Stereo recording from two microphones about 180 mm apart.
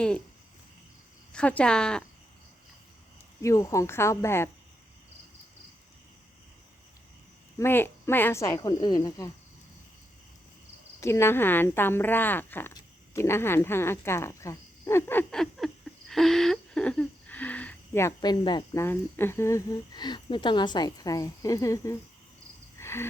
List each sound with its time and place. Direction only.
1.3 s speech: 5° left (ahead or behind)
3.4 s speech: 15° left (ahead or behind)
7.6 s speech: 15° left (ahead or behind)
11.0 s speech: 15° left (ahead or behind)
22.8 s cricket: 15° left (ahead or behind)